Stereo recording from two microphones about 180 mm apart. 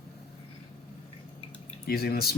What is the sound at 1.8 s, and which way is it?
Speech, 60° left (ahead or behind).